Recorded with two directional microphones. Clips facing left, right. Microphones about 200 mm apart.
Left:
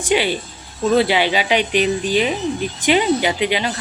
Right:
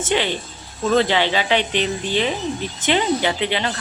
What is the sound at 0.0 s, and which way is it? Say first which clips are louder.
Speech: left 3 dB; 10° left (ahead or behind).